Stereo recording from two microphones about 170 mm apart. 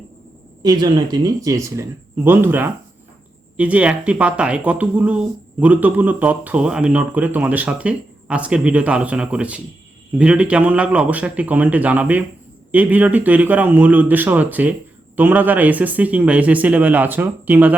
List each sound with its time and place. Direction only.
0.6 s speech: 25° right (ahead or behind)